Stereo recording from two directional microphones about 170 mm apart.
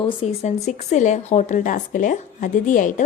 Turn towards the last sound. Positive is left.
turn(degrees=50)  # may be behind; listen again after turning